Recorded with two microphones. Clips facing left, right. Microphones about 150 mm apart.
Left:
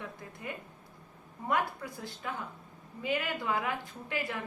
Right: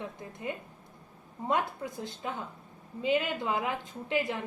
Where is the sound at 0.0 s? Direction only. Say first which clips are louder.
Right 4 dB; 20° right (ahead or behind).